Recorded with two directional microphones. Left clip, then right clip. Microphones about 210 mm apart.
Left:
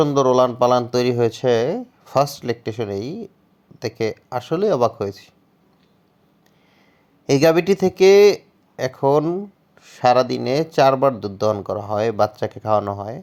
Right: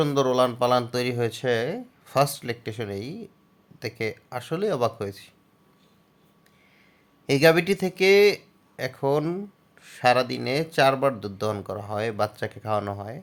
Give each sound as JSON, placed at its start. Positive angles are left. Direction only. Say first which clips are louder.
{"t": 0.0, "sound": "speech", "louder": "left 6 dB", "side_deg": 15}
{"t": 7.3, "sound": "speech", "louder": "left 4 dB", "side_deg": 20}